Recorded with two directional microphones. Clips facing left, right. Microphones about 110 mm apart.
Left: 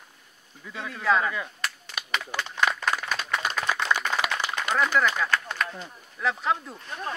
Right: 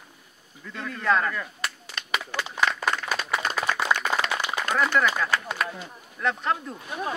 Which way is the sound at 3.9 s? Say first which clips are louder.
Even; 15° right (ahead or behind).